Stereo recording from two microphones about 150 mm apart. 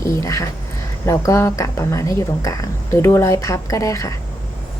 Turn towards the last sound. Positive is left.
turn(degrees=20)  # may be behind; listen again after turning